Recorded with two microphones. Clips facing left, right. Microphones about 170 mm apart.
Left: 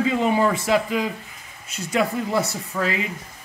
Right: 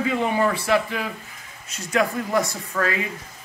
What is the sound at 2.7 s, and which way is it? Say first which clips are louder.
Speech: right 1 dB; 20° left (ahead or behind).